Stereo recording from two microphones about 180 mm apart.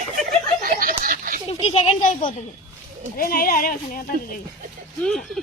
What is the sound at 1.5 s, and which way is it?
Speech, 35° left (ahead or behind).